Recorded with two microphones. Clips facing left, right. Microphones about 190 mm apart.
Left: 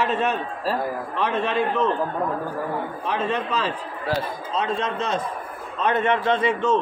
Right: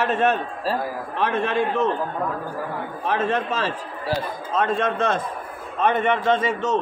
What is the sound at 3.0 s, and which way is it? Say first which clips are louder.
A man's voice: right 4 dB; 50° right (ahead or behind).